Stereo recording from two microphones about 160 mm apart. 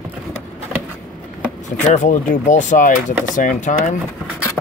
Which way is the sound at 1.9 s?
55° left (ahead or behind).